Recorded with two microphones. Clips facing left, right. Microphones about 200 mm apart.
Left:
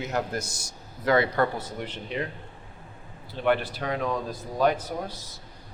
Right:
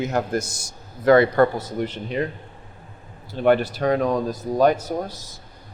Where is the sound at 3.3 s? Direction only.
45° right (ahead or behind).